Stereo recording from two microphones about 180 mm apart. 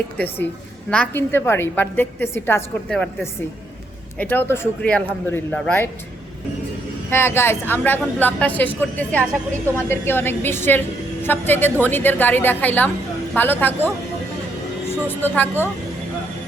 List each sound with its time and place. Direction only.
0.9 s a woman's voice: 10° left (ahead or behind)
7.1 s a woman's voice: 15° left (ahead or behind)